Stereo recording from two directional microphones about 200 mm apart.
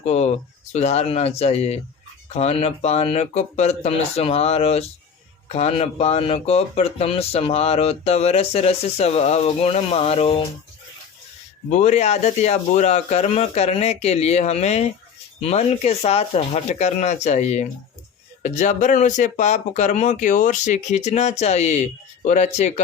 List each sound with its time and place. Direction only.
0.0 s speech: 35° left (ahead or behind)
11.7 s speech: 35° left (ahead or behind)